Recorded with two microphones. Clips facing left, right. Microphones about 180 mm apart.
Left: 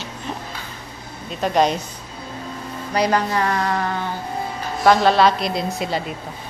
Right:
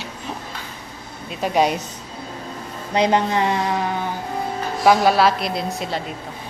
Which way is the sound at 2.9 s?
25° right (ahead or behind).